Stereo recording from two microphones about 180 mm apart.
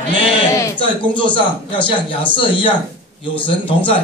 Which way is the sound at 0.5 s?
20° left (ahead or behind).